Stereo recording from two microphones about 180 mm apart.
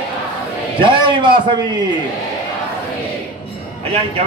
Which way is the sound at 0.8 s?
25° right (ahead or behind).